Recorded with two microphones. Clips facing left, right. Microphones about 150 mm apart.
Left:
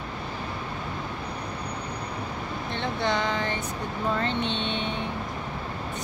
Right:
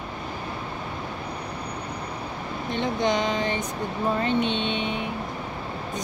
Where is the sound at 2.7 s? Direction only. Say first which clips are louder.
Right 4 dB; 15° right (ahead or behind).